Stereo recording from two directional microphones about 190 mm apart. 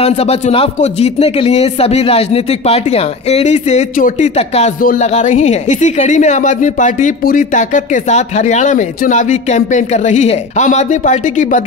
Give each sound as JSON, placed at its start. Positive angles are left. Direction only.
{"t": 0.0, "sound": "speech", "side_deg": 30}